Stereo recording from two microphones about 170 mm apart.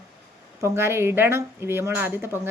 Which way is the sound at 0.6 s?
15° right (ahead or behind).